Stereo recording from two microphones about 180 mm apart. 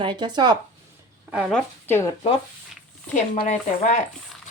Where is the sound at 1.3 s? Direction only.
5° right (ahead or behind).